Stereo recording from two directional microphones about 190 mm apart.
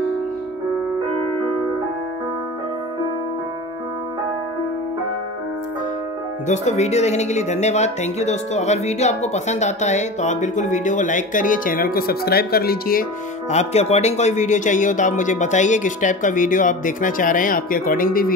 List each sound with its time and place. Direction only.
6.4 s speech: 40° left (ahead or behind)
13.5 s speech: 35° left (ahead or behind)